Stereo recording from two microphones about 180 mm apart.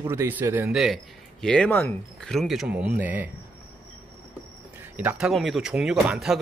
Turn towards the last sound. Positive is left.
turn(degrees=-5)  # may be behind; listen again after turning